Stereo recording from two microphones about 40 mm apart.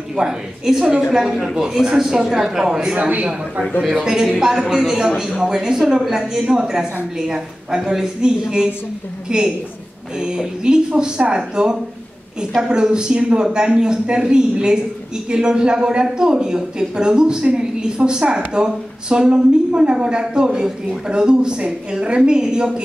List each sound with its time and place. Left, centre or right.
0.1 s speech: centre